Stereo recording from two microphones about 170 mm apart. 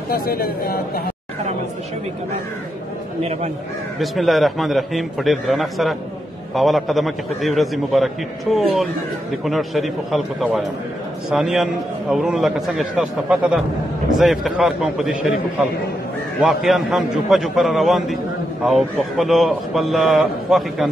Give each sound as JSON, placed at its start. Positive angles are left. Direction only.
{"t": 0.1, "sound": "speech", "side_deg": 60}
{"t": 4.0, "sound": "a man's voice", "side_deg": 0}
{"t": 16.3, "sound": "a man's voice", "side_deg": 0}